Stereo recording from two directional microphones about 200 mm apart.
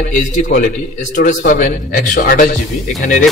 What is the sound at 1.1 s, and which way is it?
A man's voice, 40° left (ahead or behind).